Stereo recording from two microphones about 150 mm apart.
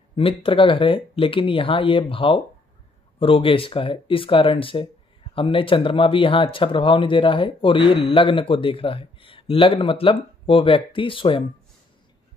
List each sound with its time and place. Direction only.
0.1 s speech: 35° left (ahead or behind)